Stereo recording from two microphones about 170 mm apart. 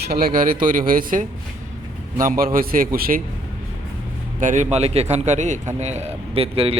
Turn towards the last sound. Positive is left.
turn(degrees=-35)  # may be behind; listen again after turning